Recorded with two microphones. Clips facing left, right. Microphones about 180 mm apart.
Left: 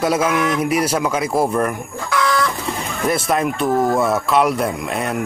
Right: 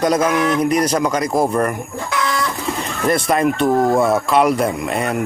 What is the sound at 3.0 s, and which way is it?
Speech, centre (ahead or behind).